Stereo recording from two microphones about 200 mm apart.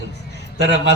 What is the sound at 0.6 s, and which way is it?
Speech, 55° left (ahead or behind).